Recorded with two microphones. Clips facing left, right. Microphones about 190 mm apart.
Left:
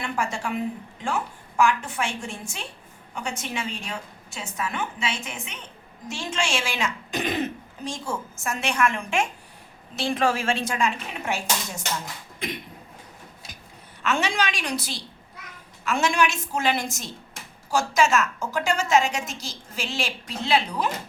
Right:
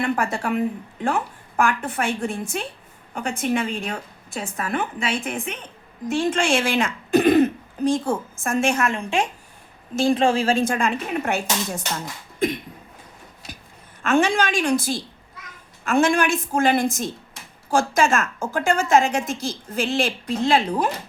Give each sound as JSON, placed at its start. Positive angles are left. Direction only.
{"t": 0.0, "sound": "a woman's voice", "side_deg": -60}
{"t": 9.9, "sound": "a woman's voice", "side_deg": -45}
{"t": 10.2, "sound": "speech", "side_deg": -30}
{"t": 10.6, "sound": "a woman's voice", "side_deg": -55}
{"t": 14.0, "sound": "a woman's voice", "side_deg": -50}